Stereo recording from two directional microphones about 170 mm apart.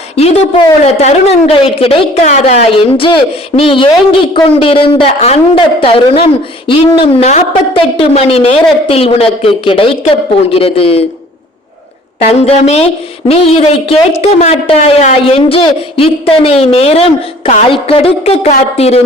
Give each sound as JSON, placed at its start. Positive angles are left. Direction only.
{"t": 0.2, "sound": "a woman's voice", "side_deg": 40}
{"t": 12.2, "sound": "a woman's voice", "side_deg": 40}